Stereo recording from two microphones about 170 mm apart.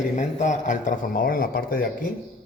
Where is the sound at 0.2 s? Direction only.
45° left (ahead or behind).